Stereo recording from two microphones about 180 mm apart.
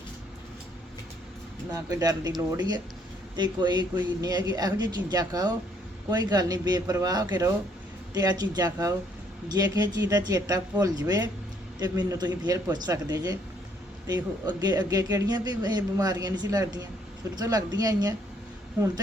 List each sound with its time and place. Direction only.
1.7 s a man's voice: 20° right (ahead or behind)